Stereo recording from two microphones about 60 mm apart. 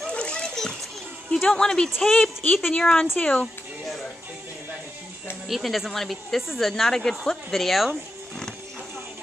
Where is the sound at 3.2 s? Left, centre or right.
Centre.